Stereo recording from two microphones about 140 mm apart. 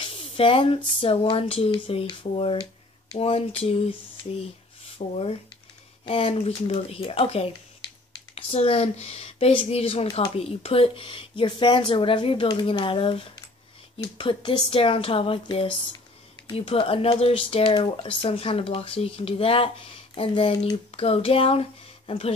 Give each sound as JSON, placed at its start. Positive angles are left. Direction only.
{"t": 0.0, "sound": "speech", "side_deg": 40}
{"t": 3.2, "sound": "speech", "side_deg": 45}